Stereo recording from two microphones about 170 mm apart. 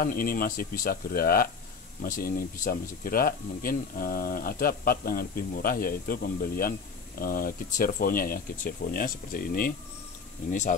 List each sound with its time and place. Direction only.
0.0 s speech: 55° left (ahead or behind)